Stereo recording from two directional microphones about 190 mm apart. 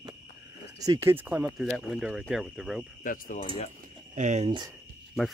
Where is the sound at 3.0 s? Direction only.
40° left (ahead or behind).